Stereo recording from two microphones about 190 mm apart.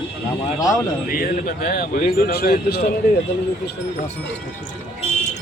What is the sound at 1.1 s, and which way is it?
Speech, 50° left (ahead or behind).